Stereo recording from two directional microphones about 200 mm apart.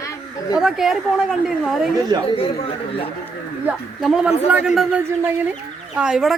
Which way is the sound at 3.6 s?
Centre (ahead or behind).